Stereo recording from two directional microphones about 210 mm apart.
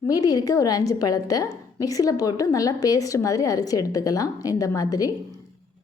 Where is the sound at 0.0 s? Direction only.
15° left (ahead or behind).